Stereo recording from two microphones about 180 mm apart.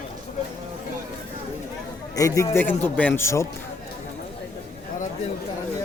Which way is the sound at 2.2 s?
20° left (ahead or behind).